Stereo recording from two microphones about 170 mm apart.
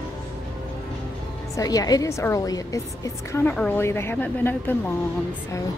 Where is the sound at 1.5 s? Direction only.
20° left (ahead or behind).